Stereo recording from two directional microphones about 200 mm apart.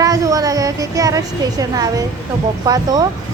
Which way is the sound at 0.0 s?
15° right (ahead or behind).